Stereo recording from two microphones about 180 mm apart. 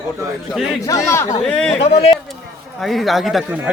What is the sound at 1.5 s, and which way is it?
Speech, 5° left (ahead or behind).